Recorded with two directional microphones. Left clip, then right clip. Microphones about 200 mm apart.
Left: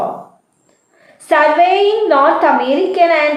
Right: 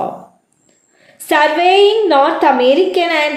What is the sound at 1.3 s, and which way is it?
A woman's voice, 50° right (ahead or behind).